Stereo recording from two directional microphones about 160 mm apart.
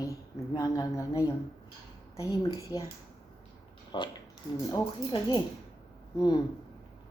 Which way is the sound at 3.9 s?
30° left (ahead or behind).